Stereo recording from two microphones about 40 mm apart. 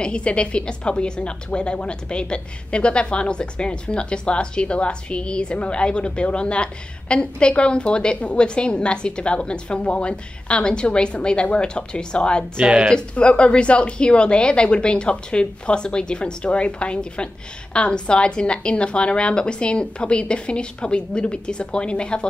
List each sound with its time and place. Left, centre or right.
0.0 s a woman's voice: left